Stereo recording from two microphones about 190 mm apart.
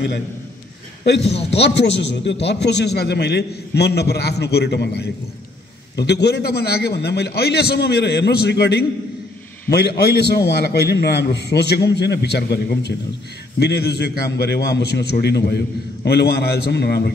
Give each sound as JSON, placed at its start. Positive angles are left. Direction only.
{"t": 1.5, "sound": "a man's voice", "side_deg": 65}